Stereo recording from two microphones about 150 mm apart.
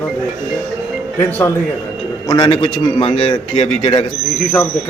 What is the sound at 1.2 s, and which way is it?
Speech, 15° left (ahead or behind).